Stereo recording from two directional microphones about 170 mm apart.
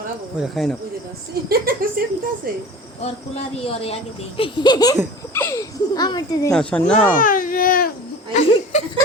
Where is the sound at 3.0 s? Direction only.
35° left (ahead or behind).